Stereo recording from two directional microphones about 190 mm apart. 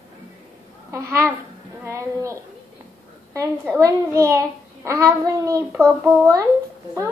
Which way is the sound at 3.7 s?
15° right (ahead or behind).